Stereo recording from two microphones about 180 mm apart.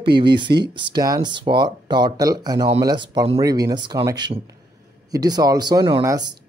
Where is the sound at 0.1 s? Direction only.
25° right (ahead or behind).